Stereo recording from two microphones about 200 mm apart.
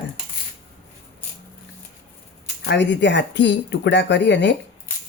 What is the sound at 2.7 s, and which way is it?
Speech, 60° left (ahead or behind).